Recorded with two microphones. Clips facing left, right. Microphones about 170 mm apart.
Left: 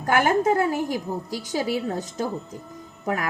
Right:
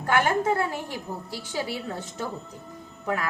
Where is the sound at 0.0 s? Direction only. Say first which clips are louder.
Left 3 dB; 40° left (ahead or behind).